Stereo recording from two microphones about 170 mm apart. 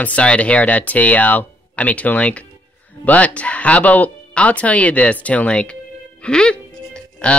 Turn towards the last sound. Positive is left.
turn(degrees=5)  # may be behind; listen again after turning